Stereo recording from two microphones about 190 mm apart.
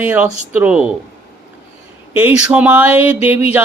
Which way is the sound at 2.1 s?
10° right (ahead or behind).